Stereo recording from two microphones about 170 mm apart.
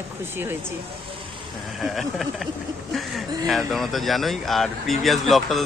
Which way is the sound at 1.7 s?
Centre (ahead or behind).